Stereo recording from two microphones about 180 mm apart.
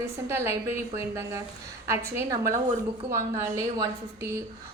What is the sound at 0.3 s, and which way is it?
A woman's voice, 15° right (ahead or behind).